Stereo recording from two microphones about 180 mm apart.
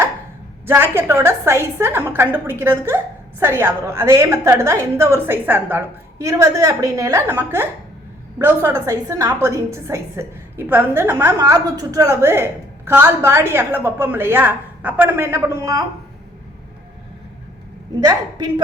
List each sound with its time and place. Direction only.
0.7 s a woman's voice: 15° right (ahead or behind)
18.0 s a woman's voice: 25° right (ahead or behind)